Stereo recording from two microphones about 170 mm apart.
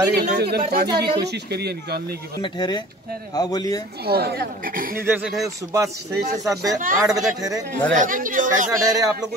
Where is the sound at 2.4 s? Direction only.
25° left (ahead or behind).